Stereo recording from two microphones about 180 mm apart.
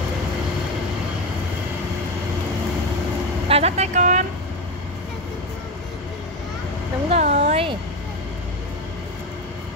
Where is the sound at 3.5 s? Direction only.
35° right (ahead or behind).